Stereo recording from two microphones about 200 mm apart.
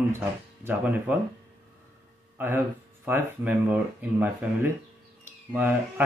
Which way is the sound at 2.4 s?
10° right (ahead or behind).